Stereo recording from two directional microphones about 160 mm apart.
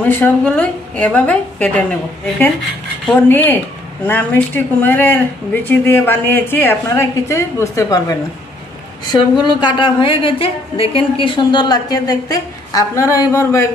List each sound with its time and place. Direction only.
0.0 s speech: 10° left (ahead or behind)
3.1 s a woman's voice: 10° left (ahead or behind)